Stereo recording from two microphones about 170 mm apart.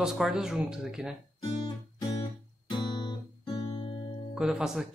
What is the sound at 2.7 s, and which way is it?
Guitar, 25° left (ahead or behind).